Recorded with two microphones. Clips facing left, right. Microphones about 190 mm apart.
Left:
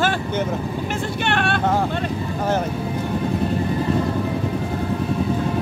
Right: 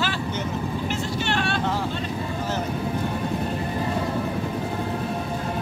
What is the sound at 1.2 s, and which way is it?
Vehicle, 60° left (ahead or behind).